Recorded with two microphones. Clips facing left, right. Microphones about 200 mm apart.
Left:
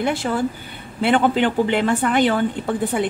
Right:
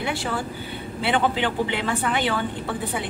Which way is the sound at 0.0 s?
45° left (ahead or behind).